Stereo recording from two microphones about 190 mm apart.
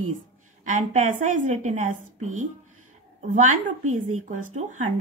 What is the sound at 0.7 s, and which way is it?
Speech, 40° right (ahead or behind).